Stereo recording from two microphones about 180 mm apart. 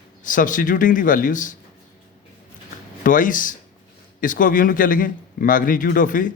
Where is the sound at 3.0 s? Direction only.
50° left (ahead or behind).